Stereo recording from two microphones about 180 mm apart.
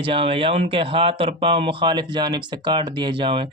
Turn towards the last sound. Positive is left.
turn(degrees=-30)  # may be behind; listen again after turning